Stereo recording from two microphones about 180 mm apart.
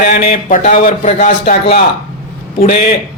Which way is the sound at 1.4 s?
60° left (ahead or behind).